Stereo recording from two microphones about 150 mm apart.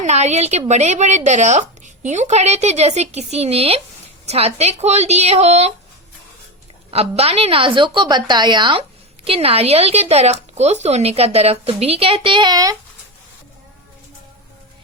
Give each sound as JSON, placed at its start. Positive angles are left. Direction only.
{"t": 0.0, "sound": "a woman's voice", "side_deg": -50}
{"t": 6.9, "sound": "a woman's voice", "side_deg": -40}